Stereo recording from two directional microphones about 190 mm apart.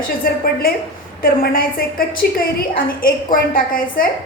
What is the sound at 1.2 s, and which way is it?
A woman's voice, 50° left (ahead or behind).